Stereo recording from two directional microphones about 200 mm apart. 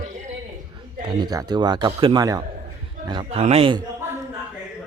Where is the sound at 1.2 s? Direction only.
20° right (ahead or behind).